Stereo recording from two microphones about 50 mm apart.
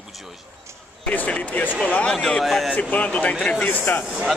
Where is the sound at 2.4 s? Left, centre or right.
Centre.